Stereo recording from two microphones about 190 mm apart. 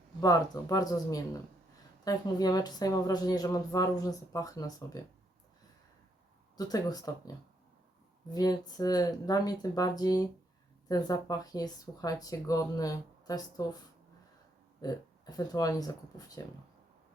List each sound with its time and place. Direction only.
0.2 s speech: 20° left (ahead or behind)
6.6 s speech: 20° left (ahead or behind)
14.8 s speech: 20° left (ahead or behind)